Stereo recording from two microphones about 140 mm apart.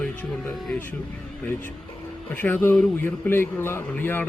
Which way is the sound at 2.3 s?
10° left (ahead or behind).